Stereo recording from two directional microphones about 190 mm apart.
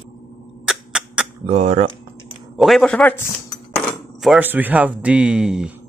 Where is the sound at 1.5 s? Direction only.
35° right (ahead or behind).